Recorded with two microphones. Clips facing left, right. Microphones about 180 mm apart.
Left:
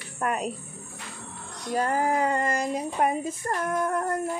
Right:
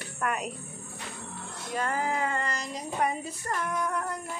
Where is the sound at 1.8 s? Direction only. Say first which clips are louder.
Left 5 dB; 40° left (ahead or behind).